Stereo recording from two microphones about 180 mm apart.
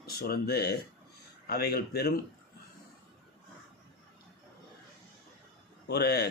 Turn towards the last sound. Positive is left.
turn(degrees=60)  # may be behind; listen again after turning